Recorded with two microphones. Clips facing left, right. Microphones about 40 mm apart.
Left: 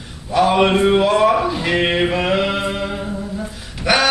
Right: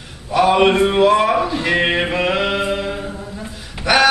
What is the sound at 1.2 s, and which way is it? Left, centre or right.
Music, centre.